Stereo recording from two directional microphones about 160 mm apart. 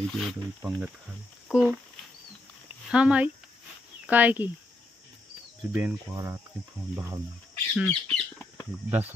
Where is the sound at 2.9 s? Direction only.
5° right (ahead or behind).